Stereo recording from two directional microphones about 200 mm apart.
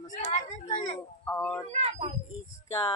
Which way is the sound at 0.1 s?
35° left (ahead or behind).